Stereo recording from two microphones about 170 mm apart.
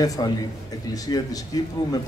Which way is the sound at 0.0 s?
20° left (ahead or behind).